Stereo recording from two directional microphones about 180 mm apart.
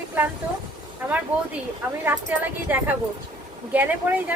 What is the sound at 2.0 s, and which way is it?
A woman's voice, 10° right (ahead or behind).